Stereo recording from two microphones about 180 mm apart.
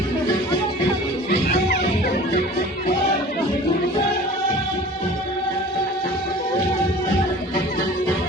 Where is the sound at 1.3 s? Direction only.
65° left (ahead or behind).